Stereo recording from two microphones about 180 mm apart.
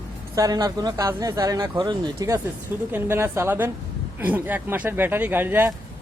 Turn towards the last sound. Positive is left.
turn(degrees=-10)  # may be behind; listen again after turning